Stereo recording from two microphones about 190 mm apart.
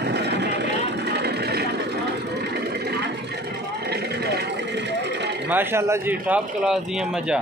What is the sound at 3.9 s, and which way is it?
Vehicle, 60° right (ahead or behind).